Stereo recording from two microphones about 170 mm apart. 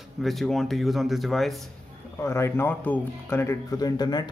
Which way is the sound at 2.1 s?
15° left (ahead or behind).